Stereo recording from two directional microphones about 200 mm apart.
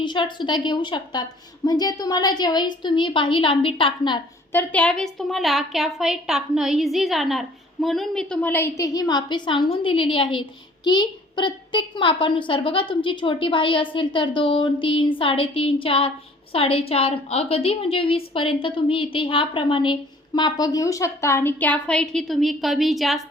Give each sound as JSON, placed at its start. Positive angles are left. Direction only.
{"t": 0.0, "sound": "a woman's voice", "side_deg": 25}
{"t": 4.5, "sound": "a woman's voice", "side_deg": 5}